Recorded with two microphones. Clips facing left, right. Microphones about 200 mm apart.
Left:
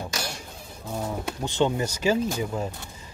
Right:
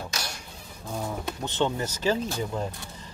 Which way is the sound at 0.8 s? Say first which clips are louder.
Left 2 dB; 5° left (ahead or behind).